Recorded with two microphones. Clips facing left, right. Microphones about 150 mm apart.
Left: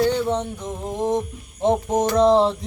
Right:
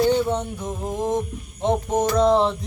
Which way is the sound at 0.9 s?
20° left (ahead or behind).